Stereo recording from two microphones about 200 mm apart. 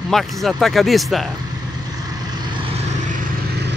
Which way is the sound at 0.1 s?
Centre (ahead or behind).